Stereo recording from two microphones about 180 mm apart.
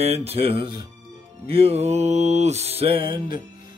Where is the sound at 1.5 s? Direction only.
35° right (ahead or behind).